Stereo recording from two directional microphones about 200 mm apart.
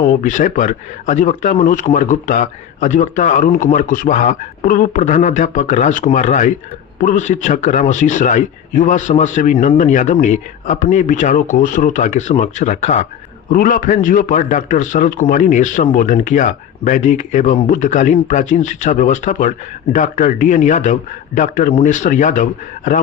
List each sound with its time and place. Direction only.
0.0 s a man's voice: 40° left (ahead or behind)